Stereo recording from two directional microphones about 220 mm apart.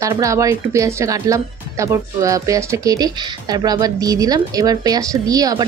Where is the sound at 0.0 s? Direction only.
15° right (ahead or behind).